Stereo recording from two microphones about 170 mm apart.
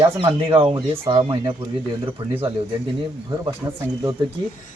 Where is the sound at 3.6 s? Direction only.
20° right (ahead or behind).